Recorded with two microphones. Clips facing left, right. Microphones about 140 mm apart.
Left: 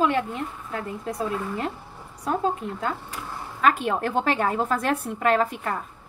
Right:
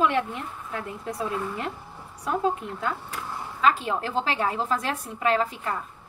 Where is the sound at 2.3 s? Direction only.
40° left (ahead or behind).